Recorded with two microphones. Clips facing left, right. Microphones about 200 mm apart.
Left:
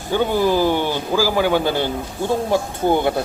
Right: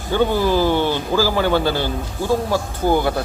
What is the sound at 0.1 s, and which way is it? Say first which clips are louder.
A man's voice: even; 15° left (ahead or behind).